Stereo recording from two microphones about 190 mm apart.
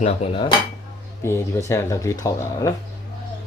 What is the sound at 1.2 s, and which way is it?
Speech, 15° left (ahead or behind).